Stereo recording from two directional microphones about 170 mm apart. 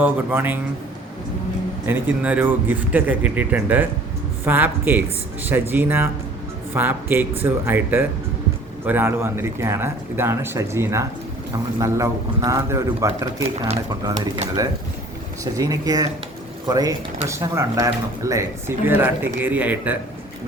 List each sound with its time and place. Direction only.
0.0 s speech: 10° right (ahead or behind)
1.9 s speech: 10° right (ahead or behind)
15.5 s speech: 20° right (ahead or behind)